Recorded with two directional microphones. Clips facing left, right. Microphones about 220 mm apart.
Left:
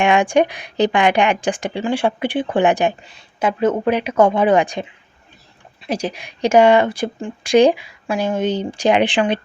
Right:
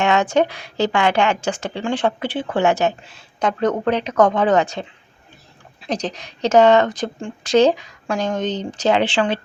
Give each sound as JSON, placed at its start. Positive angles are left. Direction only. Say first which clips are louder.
{"t": 0.0, "sound": "speech", "louder": "left 2 dB", "side_deg": 15}
{"t": 3.0, "sound": "speech", "louder": "left 1 dB", "side_deg": 0}